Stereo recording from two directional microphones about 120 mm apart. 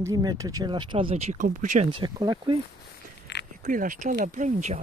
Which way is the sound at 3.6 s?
90° right.